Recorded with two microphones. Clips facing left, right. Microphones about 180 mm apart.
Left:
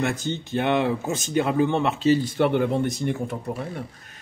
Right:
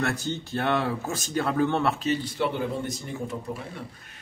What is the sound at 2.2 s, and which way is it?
Speech, 55° left (ahead or behind).